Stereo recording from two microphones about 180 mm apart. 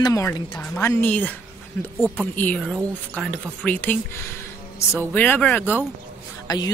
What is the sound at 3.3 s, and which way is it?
Speech, 10° left (ahead or behind).